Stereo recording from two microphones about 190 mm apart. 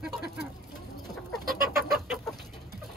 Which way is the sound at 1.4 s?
50° right (ahead or behind).